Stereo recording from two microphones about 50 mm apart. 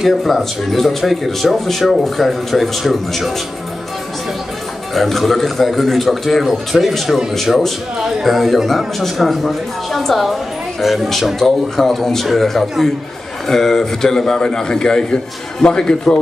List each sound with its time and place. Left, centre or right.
0.0 s speech: centre
4.9 s a man's voice: centre